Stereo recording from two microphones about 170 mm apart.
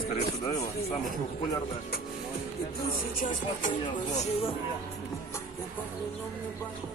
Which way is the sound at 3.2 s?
50° left (ahead or behind).